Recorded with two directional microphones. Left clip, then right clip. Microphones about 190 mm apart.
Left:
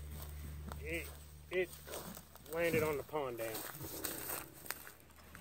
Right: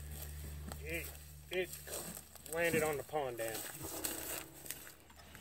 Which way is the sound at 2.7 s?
50° right (ahead or behind).